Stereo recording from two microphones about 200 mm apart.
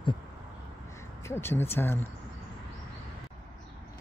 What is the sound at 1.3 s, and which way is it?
Speech, 10° left (ahead or behind).